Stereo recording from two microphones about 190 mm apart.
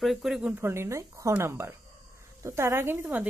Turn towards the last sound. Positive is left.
turn(degrees=-10)  # may be behind; listen again after turning